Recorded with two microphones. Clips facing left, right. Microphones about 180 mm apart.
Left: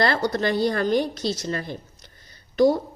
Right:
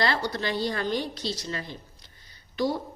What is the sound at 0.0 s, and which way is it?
Speech, 45° left (ahead or behind).